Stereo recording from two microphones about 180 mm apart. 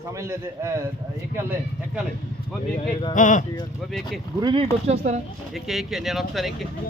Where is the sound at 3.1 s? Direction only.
45° left (ahead or behind).